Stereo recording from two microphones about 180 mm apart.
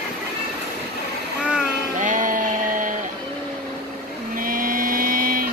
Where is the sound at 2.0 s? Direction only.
45° right (ahead or behind).